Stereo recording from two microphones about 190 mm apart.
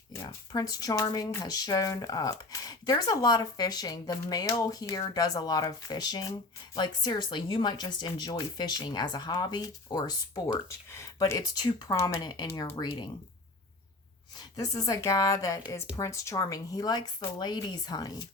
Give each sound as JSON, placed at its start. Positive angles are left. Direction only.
{"t": 0.1, "sound": "speech", "side_deg": 15}
{"t": 14.3, "sound": "speech", "side_deg": 20}